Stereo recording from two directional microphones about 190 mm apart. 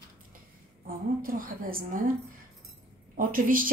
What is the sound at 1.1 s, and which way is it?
Speech, 45° right (ahead or behind).